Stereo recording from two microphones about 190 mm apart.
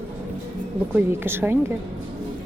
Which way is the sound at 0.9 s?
10° right (ahead or behind).